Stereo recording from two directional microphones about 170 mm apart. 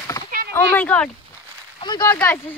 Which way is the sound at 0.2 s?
20° left (ahead or behind).